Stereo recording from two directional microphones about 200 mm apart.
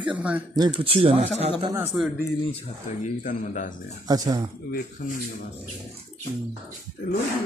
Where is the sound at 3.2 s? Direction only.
40° left (ahead or behind).